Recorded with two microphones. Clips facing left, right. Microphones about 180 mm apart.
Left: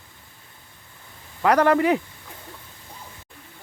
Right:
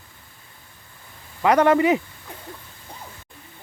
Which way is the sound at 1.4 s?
5° right (ahead or behind).